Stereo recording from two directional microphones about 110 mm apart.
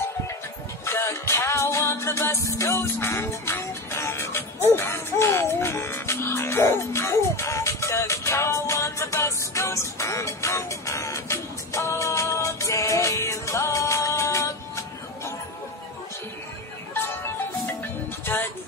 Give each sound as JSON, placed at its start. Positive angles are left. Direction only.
{"t": 0.8, "sound": "music", "side_deg": 25}
{"t": 18.3, "sound": "music", "side_deg": 20}